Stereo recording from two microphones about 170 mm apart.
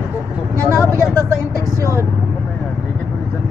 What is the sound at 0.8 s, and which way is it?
Speech, 15° left (ahead or behind).